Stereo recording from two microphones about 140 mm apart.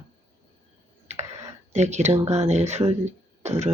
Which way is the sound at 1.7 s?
55° right (ahead or behind).